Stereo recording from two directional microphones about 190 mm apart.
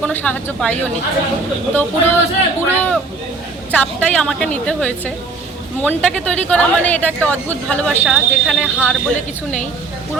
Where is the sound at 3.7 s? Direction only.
5° left (ahead or behind).